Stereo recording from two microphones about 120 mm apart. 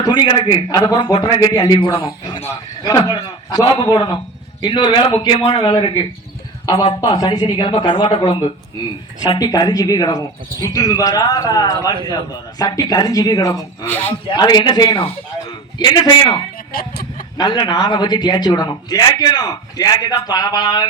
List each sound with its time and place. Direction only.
0.0 s a man's voice: 40° left (ahead or behind)
1.8 s a man's voice: 45° left (ahead or behind); by 13.6 s 30° left (ahead or behind)
13.8 s speech: 15° left (ahead or behind)
14.3 s a man's voice: 35° left (ahead or behind)